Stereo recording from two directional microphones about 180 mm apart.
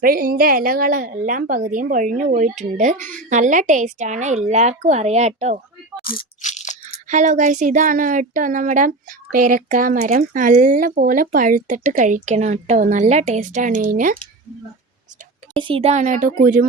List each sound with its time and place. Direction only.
0.0 s a woman's voice: 55° right (ahead or behind)
6.1 s speech: 50° left (ahead or behind)
6.8 s speech: 40° right (ahead or behind)
15.5 s speech: 30° right (ahead or behind); by 16.6 s 50° right (ahead or behind)